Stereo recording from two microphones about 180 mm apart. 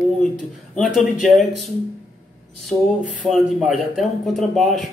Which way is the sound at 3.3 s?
Centre (ahead or behind).